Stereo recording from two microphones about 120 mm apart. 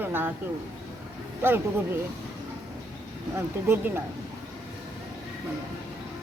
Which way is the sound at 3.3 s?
20° right (ahead or behind).